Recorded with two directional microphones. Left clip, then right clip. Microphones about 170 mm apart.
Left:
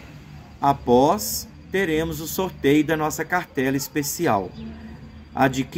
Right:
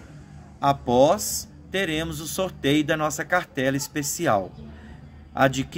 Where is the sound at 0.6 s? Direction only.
20° right (ahead or behind).